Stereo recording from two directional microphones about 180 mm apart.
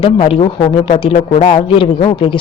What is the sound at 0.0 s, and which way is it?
Speech, 30° left (ahead or behind).